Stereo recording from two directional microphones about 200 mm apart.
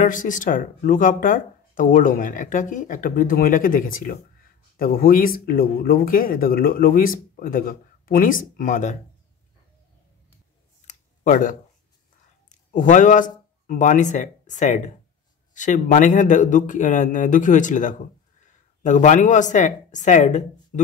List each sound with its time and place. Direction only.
0.0 s speech: 40° left (ahead or behind)
10.9 s a sound: 40° left (ahead or behind)
12.4 s speech: 40° left (ahead or behind)